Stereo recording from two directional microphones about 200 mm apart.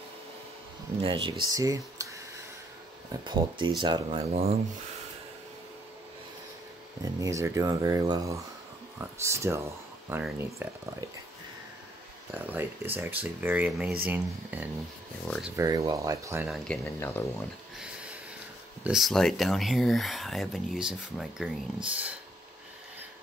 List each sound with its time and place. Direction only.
1.0 s speech: 25° right (ahead or behind)
3.1 s speech: 25° right (ahead or behind)
7.2 s speech: 15° right (ahead or behind)
12.4 s speech: 10° right (ahead or behind)
15.5 s speech: 20° right (ahead or behind)
16.4 s speech: centre (ahead or behind)
17.7 s a sound: 5° right (ahead or behind)
18.9 s speech: centre (ahead or behind)